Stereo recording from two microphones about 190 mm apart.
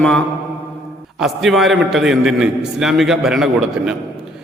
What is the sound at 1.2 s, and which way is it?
A man's voice, centre (ahead or behind).